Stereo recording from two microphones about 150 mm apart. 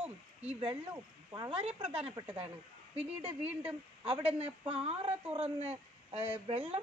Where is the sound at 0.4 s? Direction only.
40° right (ahead or behind).